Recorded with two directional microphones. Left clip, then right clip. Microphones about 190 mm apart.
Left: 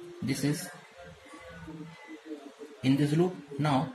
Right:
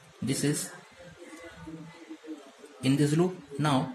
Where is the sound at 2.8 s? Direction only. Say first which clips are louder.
Right 1 dB; 20° right (ahead or behind).